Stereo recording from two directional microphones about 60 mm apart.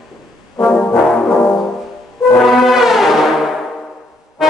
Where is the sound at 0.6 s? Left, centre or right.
Centre.